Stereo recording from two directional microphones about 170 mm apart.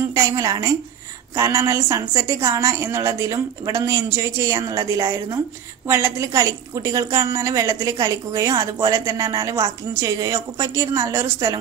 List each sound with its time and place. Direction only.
0.1 s a woman's voice: 20° right (ahead or behind)